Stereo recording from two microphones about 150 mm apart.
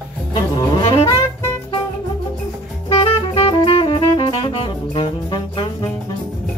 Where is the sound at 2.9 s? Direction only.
40° left (ahead or behind).